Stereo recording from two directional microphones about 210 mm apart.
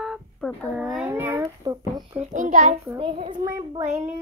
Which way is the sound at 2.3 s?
35° right (ahead or behind).